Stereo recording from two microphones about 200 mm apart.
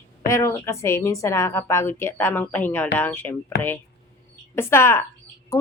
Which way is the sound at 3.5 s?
55° left (ahead or behind).